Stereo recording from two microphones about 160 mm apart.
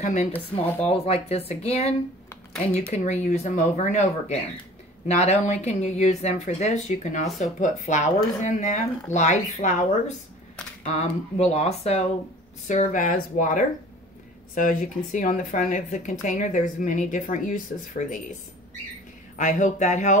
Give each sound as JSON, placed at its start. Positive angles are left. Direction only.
{"t": 0.0, "sound": "speech", "side_deg": 50}
{"t": 0.3, "sound": "speech", "side_deg": 10}
{"t": 0.8, "sound": "speech", "side_deg": 40}
{"t": 19.3, "sound": "speech", "side_deg": 50}